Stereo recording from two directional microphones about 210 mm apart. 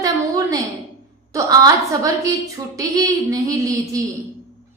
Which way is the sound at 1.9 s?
15° right (ahead or behind).